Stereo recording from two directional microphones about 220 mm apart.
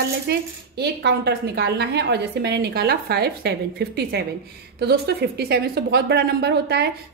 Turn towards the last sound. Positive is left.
turn(degrees=-50)  # may be behind; listen again after turning